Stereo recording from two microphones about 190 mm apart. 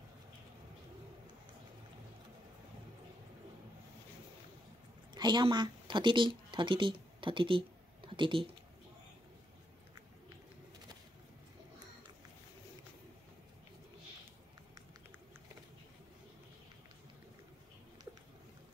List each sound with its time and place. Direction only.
5.1 s speech: 25° right (ahead or behind)